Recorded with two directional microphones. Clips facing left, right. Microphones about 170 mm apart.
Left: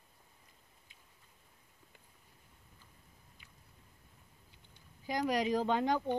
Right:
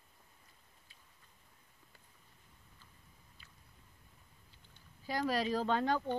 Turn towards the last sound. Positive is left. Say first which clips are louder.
# left 1 dB
turn(degrees=15)  # may be behind; listen again after turning